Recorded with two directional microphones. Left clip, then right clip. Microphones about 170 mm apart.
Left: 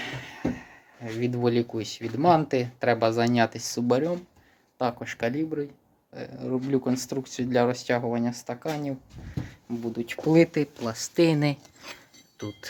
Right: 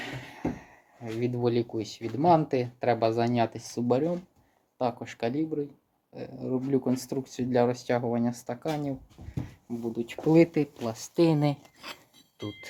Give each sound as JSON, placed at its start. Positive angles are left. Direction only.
{"t": 0.0, "sound": "speech", "side_deg": -15}
{"t": 9.3, "sound": "speech", "side_deg": 0}
{"t": 11.6, "sound": "a sound", "side_deg": -20}
{"t": 12.4, "sound": "speech", "side_deg": -5}